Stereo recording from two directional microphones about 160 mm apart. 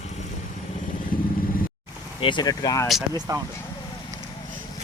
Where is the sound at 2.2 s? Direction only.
25° left (ahead or behind).